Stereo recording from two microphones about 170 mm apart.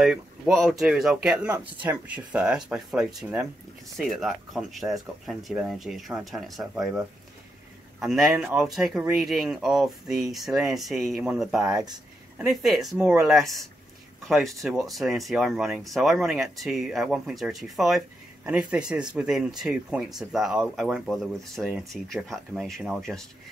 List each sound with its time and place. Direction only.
0.0 s speech: centre (ahead or behind)
8.0 s speech: 5° right (ahead or behind)
11.7 s speech: 25° right (ahead or behind)
12.4 s speech: 5° right (ahead or behind)